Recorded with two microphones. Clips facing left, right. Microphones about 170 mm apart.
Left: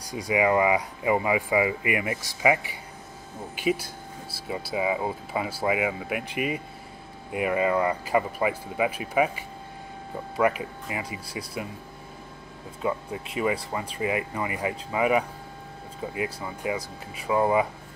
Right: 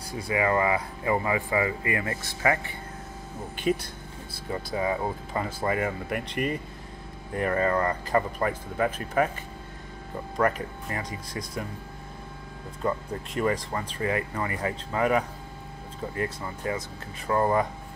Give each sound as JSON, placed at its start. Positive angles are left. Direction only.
{"t": 0.0, "sound": "speech", "side_deg": 15}
{"t": 12.8, "sound": "speech", "side_deg": 5}
{"t": 16.4, "sound": "speech", "side_deg": 10}